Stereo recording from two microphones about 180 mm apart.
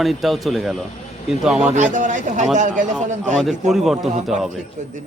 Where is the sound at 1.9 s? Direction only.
45° right (ahead or behind).